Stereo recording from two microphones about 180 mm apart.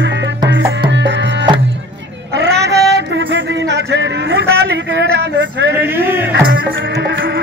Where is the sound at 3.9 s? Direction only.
75° right (ahead or behind).